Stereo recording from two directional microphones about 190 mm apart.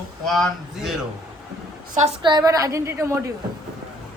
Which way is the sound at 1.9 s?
35° right (ahead or behind).